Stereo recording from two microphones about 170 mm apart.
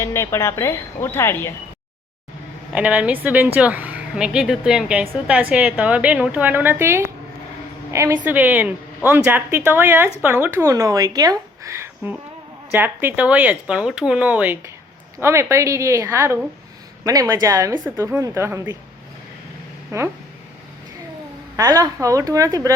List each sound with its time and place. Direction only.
0.0 s a woman's voice: 15° left (ahead or behind)
2.7 s a woman's voice: 10° right (ahead or behind)
19.9 s speech: 20° right (ahead or behind)
21.5 s speech: 20° right (ahead or behind)